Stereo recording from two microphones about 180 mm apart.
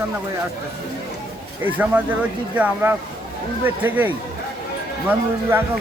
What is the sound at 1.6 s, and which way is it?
Speech, 10° right (ahead or behind).